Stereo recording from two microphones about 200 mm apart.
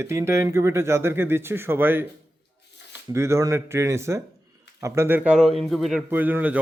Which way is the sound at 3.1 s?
15° right (ahead or behind).